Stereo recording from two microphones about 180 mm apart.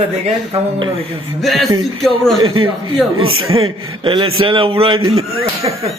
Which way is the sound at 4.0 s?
25° right (ahead or behind).